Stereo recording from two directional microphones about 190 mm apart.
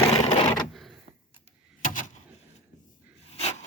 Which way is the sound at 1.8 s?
45° left (ahead or behind).